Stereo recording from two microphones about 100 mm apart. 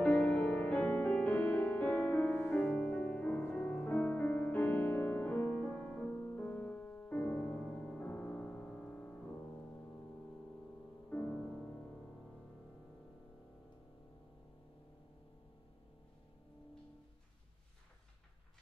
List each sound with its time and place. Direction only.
0.0 s music: 15° left (ahead or behind)
11.1 s music: 15° left (ahead or behind)